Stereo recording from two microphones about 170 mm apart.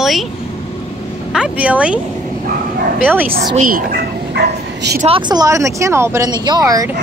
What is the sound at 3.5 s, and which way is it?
Speech, 55° right (ahead or behind).